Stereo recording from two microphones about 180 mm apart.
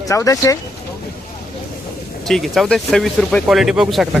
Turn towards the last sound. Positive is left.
turn(degrees=0)  # may be behind; listen again after turning